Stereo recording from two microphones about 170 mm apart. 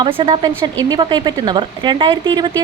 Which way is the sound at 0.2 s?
25° right (ahead or behind).